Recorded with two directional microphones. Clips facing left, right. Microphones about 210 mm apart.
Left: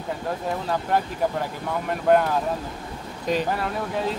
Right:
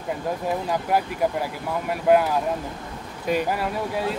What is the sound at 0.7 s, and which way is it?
Speech, 10° right (ahead or behind).